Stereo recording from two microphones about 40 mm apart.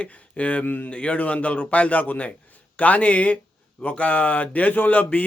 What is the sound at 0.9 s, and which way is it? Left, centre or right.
Speech, left.